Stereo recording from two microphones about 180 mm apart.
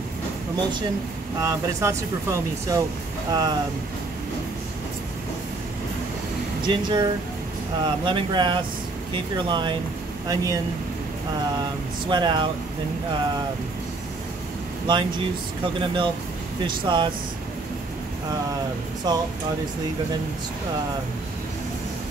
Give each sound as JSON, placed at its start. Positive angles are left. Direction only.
{"t": 0.6, "sound": "speech", "side_deg": -25}
{"t": 6.7, "sound": "speech", "side_deg": -25}
{"t": 12.1, "sound": "speech", "side_deg": -25}
{"t": 14.9, "sound": "speech", "side_deg": -25}
{"t": 19.1, "sound": "speech", "side_deg": -20}